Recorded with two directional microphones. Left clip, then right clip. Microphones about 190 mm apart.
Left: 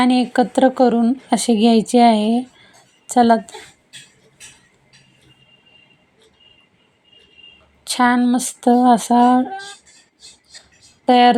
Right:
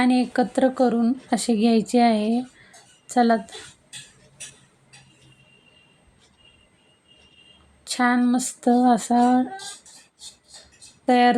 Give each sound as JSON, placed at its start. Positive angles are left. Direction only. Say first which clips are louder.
{"t": 0.0, "sound": "speech", "louder": "left 5 dB", "side_deg": 15}
{"t": 7.9, "sound": "speech", "louder": "left 5 dB", "side_deg": 15}
{"t": 11.0, "sound": "speech", "louder": "left 6 dB", "side_deg": 15}